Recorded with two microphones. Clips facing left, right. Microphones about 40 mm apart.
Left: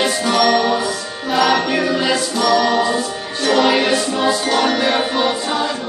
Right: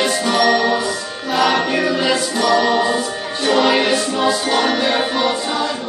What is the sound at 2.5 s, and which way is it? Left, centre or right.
Music, centre.